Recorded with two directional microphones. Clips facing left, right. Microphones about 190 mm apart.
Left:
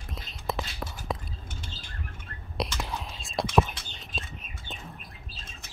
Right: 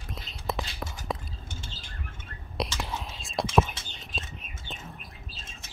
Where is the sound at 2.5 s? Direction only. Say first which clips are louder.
Even; centre (ahead or behind).